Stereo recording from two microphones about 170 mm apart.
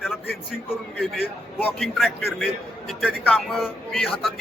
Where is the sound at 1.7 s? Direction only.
Centre (ahead or behind).